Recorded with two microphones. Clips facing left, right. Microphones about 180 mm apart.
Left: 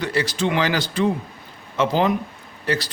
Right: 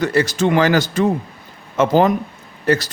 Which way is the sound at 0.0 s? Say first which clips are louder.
Right 6 dB; 45° right (ahead or behind).